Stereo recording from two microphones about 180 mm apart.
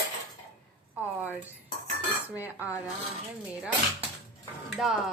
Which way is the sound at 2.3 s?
10° right (ahead or behind).